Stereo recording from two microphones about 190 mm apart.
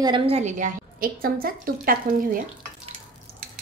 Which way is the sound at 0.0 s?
25° right (ahead or behind).